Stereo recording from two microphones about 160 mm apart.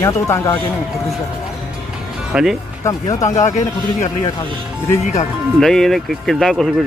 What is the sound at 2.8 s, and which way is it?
Speech, 20° left (ahead or behind).